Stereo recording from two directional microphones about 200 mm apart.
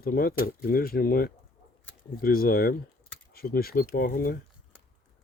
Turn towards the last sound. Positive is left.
turn(degrees=50)  # may be behind; listen again after turning